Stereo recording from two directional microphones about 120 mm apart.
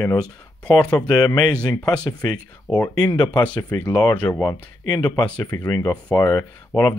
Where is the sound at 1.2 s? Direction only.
35° left (ahead or behind).